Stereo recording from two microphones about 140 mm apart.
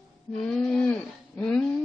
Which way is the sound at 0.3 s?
5° left (ahead or behind).